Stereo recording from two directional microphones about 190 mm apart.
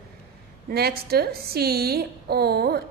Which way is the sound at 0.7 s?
55° right (ahead or behind).